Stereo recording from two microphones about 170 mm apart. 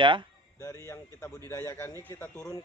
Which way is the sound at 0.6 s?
15° left (ahead or behind).